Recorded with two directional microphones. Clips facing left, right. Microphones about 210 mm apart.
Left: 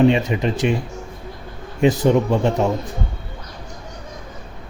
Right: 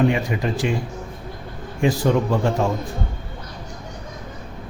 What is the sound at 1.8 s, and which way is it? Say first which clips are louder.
Speech: left 3 dB; 20° left (ahead or behind).